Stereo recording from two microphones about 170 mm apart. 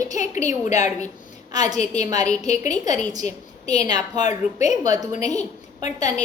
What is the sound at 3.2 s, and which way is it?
Speech, 45° left (ahead or behind).